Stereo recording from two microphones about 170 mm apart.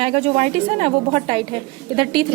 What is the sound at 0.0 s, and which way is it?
A woman's voice, 35° right (ahead or behind).